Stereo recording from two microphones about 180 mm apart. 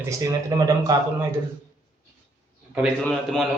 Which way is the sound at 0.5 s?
20° right (ahead or behind).